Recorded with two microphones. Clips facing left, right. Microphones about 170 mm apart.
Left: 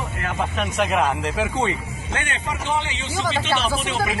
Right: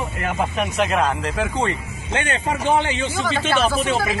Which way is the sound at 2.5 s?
55° right (ahead or behind).